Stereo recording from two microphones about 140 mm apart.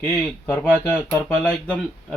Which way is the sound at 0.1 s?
15° left (ahead or behind).